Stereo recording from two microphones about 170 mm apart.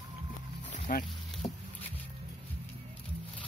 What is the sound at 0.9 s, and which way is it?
Speech, 55° left (ahead or behind).